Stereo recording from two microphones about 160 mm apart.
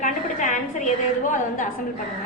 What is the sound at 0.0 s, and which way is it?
A woman's voice, 50° left (ahead or behind).